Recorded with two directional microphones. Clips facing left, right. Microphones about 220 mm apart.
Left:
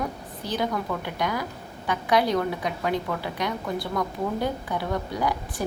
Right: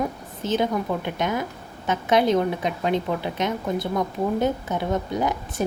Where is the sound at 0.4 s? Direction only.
20° right (ahead or behind).